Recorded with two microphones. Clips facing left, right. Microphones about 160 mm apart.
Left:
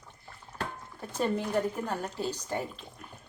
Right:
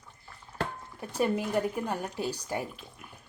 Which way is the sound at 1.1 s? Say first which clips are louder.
Right 1 dB; 10° right (ahead or behind).